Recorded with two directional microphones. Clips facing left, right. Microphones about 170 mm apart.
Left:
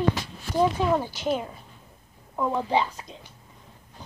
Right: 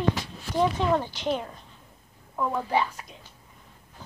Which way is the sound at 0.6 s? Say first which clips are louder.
Left 1 dB; 10° left (ahead or behind).